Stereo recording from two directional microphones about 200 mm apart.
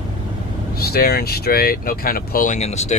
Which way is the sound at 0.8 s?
50° left (ahead or behind).